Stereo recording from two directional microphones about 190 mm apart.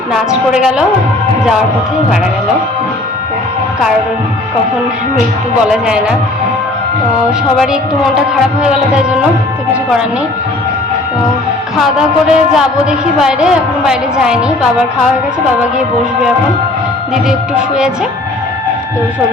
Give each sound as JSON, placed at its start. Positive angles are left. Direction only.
{"t": 0.1, "sound": "a woman's voice", "side_deg": -5}
{"t": 5.8, "sound": "a woman's voice", "side_deg": -5}
{"t": 7.3, "sound": "a woman's voice", "side_deg": -5}
{"t": 11.8, "sound": "a woman's voice", "side_deg": -5}
{"t": 17.2, "sound": "a woman's voice", "side_deg": -5}